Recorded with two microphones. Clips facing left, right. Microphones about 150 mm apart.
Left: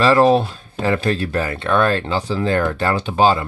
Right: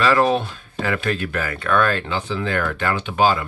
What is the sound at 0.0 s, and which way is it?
Speech, 30° left (ahead or behind).